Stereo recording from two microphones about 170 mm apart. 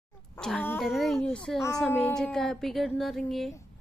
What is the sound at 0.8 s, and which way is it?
Speech, centre (ahead or behind).